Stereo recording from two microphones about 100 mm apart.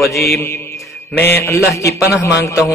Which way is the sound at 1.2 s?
25° left (ahead or behind).